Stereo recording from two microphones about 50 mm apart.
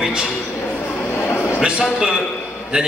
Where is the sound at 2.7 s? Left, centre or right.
Right.